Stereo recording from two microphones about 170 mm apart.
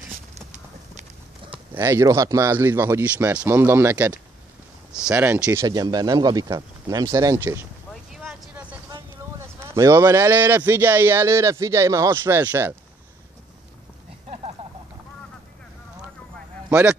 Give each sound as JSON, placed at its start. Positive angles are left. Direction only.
{"t": 1.7, "sound": "a man's voice", "side_deg": -15}
{"t": 7.9, "sound": "vehicle", "side_deg": 0}
{"t": 9.8, "sound": "a man's voice", "side_deg": -15}
{"t": 14.3, "sound": "a sound", "side_deg": -35}